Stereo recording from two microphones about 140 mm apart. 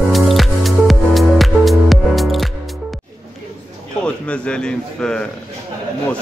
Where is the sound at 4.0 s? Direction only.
10° left (ahead or behind).